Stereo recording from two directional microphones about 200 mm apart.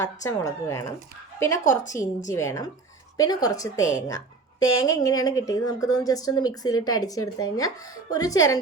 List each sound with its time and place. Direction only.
0.0 s speech: 15° left (ahead or behind)